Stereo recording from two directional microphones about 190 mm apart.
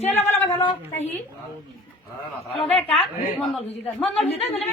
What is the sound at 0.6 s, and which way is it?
Speech, 30° left (ahead or behind).